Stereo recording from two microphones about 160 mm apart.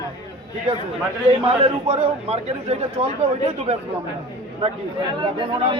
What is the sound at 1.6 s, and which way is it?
A man's voice, 40° right (ahead or behind).